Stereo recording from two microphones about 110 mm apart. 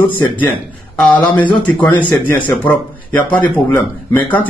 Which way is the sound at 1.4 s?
15° left (ahead or behind).